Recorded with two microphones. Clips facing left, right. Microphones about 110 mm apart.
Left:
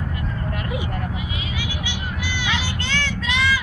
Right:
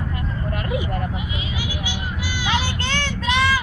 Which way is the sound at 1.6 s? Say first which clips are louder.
Right 1 dB; 40° right (ahead or behind).